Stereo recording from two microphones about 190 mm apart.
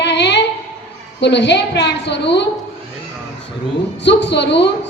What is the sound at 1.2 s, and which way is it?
A woman's voice, 65° left (ahead or behind).